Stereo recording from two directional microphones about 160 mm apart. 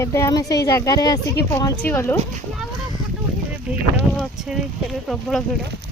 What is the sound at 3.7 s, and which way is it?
Speech, 5° right (ahead or behind).